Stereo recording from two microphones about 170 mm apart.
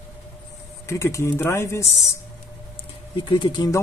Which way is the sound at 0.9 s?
15° left (ahead or behind).